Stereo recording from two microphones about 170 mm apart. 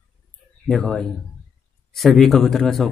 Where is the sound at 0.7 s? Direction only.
5° left (ahead or behind).